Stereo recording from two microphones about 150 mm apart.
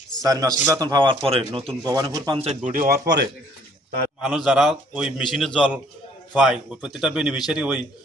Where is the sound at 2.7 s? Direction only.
75° right (ahead or behind).